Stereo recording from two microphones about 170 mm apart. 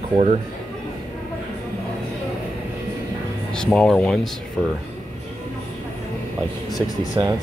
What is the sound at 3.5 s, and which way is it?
Speech, 5° left (ahead or behind).